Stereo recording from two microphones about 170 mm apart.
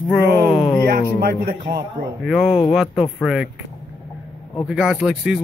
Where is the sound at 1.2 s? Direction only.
65° right (ahead or behind).